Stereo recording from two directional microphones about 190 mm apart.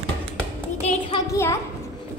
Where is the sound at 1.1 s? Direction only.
15° left (ahead or behind).